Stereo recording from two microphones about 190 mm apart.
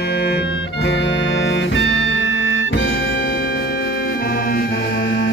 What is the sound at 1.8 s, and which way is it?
Music, 85° left.